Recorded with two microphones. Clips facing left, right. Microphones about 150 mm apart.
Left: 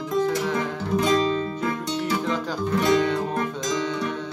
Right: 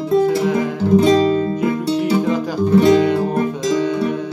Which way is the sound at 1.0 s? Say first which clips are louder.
Right 6 dB; 30° right (ahead or behind).